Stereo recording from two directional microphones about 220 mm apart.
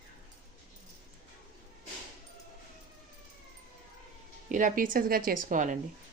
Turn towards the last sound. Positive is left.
turn(degrees=-35)  # may be behind; listen again after turning